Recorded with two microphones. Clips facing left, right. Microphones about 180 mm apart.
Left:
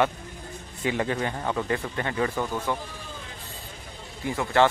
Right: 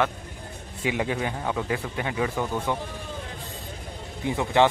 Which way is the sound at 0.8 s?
10° right (ahead or behind).